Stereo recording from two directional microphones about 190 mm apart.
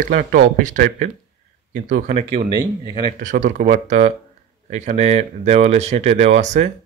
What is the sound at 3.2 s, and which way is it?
Speech, 40° right (ahead or behind).